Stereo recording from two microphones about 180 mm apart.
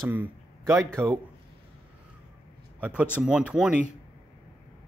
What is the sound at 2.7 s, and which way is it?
A man's voice, 10° right (ahead or behind).